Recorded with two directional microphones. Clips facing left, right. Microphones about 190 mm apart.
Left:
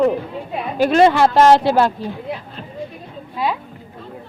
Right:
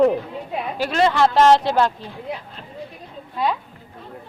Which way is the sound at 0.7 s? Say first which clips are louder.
Left 10 dB; 55° left (ahead or behind).